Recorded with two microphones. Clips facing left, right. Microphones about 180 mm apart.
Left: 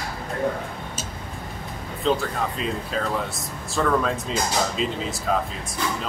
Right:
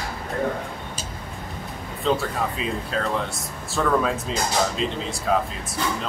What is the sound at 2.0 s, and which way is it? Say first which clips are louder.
Speech: even; centre (ahead or behind).